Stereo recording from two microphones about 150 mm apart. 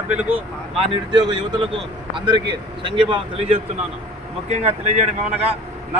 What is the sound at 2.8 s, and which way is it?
Speech, 35° right (ahead or behind).